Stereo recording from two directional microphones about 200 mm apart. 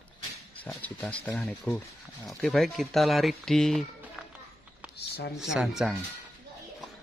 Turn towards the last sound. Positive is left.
turn(degrees=0)  # may be behind; listen again after turning